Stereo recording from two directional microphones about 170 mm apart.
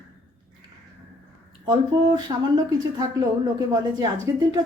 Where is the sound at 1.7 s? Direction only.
25° right (ahead or behind).